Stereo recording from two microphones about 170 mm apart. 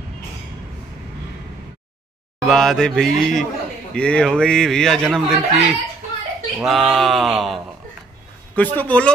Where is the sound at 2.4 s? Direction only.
Centre (ahead or behind).